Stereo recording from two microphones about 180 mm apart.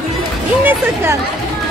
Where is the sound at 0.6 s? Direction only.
10° right (ahead or behind).